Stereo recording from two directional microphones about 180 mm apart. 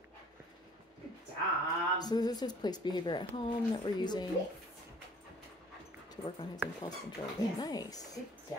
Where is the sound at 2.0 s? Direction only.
20° left (ahead or behind).